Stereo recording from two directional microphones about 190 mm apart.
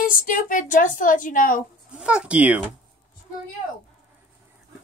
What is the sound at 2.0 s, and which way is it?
Speech, 5° right (ahead or behind).